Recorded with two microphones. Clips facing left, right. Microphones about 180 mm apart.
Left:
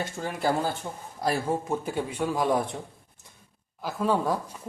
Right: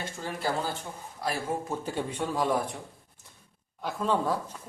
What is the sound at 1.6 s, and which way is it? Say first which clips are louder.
Speech: left 3 dB; 10° left (ahead or behind).